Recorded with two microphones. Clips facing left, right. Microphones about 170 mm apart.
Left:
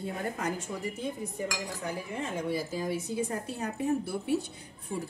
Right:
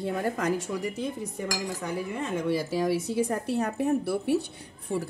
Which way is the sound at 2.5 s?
80° right.